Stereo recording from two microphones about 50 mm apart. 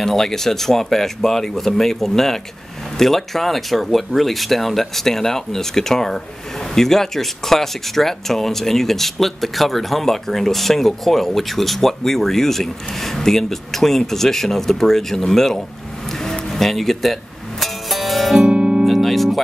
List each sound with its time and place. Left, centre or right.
0.0 s speech: centre
16.1 s music: centre
18.5 s music: centre
18.9 s music: centre